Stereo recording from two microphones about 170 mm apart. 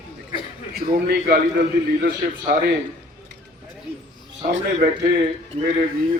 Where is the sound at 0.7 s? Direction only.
65° right (ahead or behind).